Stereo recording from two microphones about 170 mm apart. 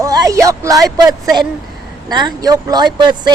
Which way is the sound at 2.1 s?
25° right (ahead or behind).